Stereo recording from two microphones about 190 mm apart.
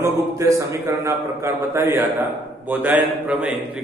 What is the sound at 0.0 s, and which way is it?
A man's voice, 15° right (ahead or behind).